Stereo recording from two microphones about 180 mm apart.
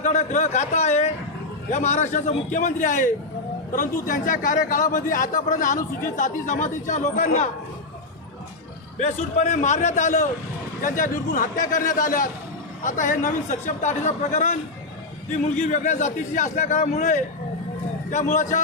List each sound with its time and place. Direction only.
0.0 s a man's voice: 40° left (ahead or behind)
9.0 s a man's voice: 45° left (ahead or behind)